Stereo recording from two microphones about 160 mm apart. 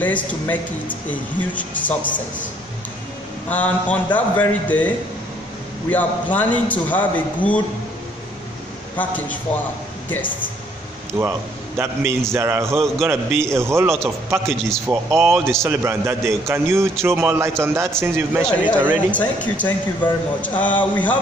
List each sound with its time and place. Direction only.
0.0 s speech: 10° left (ahead or behind)
3.4 s speech: 10° left (ahead or behind)
8.9 s speech: 10° left (ahead or behind)
11.1 s a man's voice: 20° right (ahead or behind)
18.4 s speech: 10° left (ahead or behind)
18.8 s a man's voice: 10° right (ahead or behind)
19.1 s speech: 10° left (ahead or behind)